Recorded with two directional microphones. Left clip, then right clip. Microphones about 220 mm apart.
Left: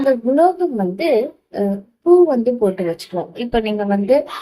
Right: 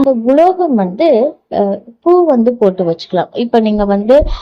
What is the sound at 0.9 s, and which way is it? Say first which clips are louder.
Speech: right 7 dB; 30° right (ahead or behind).